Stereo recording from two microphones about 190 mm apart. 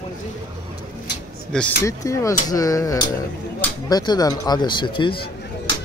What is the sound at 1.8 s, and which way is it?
Speech, 15° left (ahead or behind).